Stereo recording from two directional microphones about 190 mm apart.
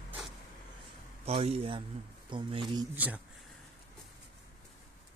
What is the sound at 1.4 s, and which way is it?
Speech, 30° right (ahead or behind).